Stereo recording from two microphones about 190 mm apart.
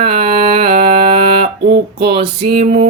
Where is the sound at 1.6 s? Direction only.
60° right (ahead or behind).